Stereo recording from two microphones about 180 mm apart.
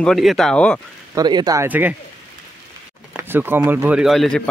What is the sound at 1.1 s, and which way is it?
Speech, 25° right (ahead or behind).